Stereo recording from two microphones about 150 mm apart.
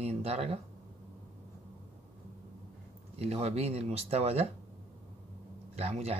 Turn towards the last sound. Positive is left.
turn(degrees=-45)  # may be behind; listen again after turning